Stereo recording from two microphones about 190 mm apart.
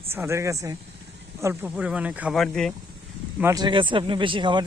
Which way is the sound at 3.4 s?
15° right (ahead or behind).